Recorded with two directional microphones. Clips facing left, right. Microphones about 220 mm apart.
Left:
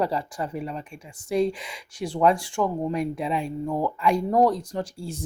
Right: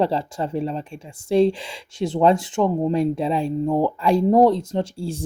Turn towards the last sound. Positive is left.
turn(degrees=-30)  # may be behind; listen again after turning